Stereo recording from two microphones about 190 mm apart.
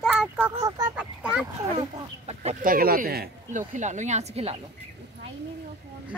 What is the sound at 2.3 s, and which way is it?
Speech, 35° right (ahead or behind).